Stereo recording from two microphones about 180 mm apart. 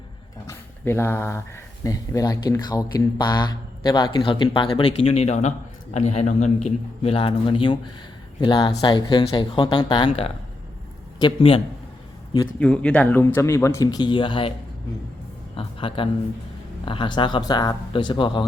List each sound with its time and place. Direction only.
0.4 s speech: 15° left (ahead or behind)
12.5 s speech: 5° left (ahead or behind); by 14.5 s 30° left (ahead or behind)
15.5 s a man's voice: 30° left (ahead or behind)